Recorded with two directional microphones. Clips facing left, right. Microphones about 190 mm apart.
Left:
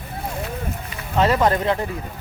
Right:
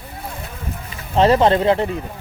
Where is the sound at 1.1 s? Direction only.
30° right (ahead or behind).